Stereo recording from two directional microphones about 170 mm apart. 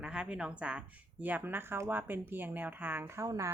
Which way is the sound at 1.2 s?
10° right (ahead or behind).